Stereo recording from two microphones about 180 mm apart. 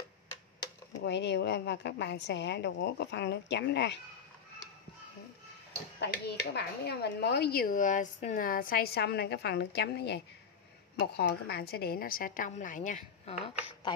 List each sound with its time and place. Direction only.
1.0 s a woman's voice: 70° left (ahead or behind)
5.9 s speech: 70° left (ahead or behind)
11.0 s a woman's voice: 60° left (ahead or behind); by 13.4 s 40° left (ahead or behind)